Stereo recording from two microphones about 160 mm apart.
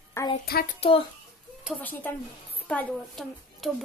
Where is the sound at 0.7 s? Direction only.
35° left (ahead or behind).